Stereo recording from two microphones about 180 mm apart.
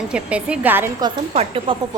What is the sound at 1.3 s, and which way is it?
Speech, 35° right (ahead or behind).